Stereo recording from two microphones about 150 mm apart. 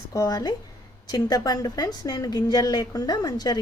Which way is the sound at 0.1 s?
20° left (ahead or behind).